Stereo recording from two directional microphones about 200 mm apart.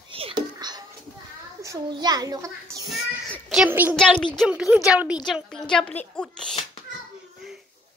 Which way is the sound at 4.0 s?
5° left (ahead or behind).